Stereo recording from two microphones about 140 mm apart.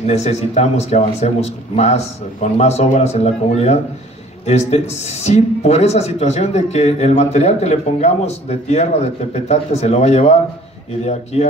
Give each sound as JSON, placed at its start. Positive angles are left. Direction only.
{"t": 0.0, "sound": "a man's voice", "side_deg": 50}